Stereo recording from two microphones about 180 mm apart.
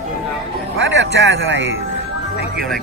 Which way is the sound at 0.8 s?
75° right (ahead or behind).